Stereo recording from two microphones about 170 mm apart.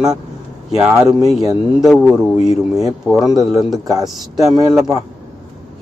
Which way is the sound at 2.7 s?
Centre (ahead or behind).